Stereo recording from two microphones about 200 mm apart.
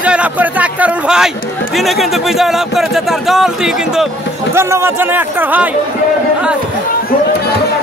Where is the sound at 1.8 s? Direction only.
Centre (ahead or behind).